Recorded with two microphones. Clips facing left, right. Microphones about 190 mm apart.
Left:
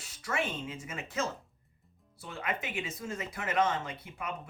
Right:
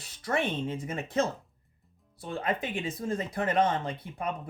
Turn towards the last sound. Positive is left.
turn(degrees=-35)  # may be behind; listen again after turning